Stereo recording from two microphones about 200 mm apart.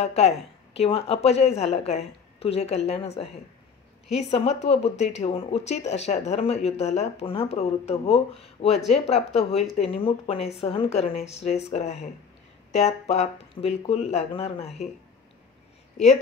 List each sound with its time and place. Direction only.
0.0 s a woman's voice: 30° left (ahead or behind)